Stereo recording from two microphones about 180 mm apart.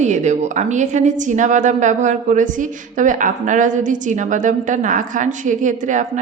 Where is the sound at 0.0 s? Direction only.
40° right (ahead or behind).